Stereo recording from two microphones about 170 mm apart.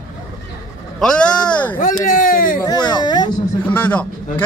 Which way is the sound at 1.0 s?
5° left (ahead or behind).